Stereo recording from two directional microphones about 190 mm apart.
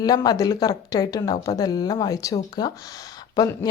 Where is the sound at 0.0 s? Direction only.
20° left (ahead or behind).